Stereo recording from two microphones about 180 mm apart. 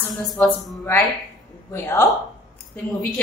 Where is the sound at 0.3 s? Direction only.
Centre (ahead or behind).